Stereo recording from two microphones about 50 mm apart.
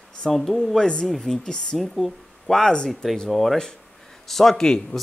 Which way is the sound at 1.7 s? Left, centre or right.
Centre.